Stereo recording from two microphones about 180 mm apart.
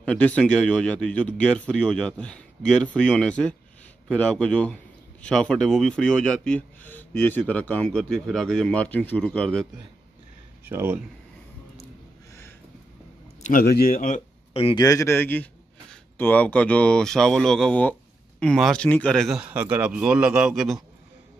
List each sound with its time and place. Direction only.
0.0 s speech: 5° left (ahead or behind)
10.6 s speech: 10° right (ahead or behind)
13.4 s speech: 50° left (ahead or behind); by 14.8 s 35° left (ahead or behind)
14.8 s speech: 20° left (ahead or behind); by 20.8 s centre (ahead or behind)